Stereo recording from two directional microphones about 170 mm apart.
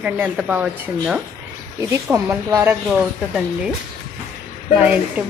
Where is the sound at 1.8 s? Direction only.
15° right (ahead or behind).